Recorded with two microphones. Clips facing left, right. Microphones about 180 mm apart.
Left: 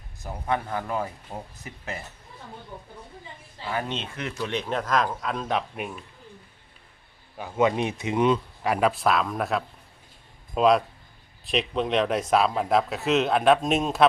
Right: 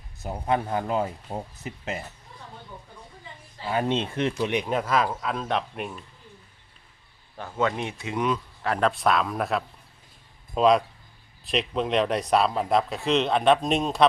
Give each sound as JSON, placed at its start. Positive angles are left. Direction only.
{"t": 0.2, "sound": "speech", "side_deg": -20}
{"t": 3.7, "sound": "speech", "side_deg": -25}
{"t": 4.4, "sound": "speech", "side_deg": -15}
{"t": 7.3, "sound": "speech", "side_deg": 15}
{"t": 8.6, "sound": "speech", "side_deg": 10}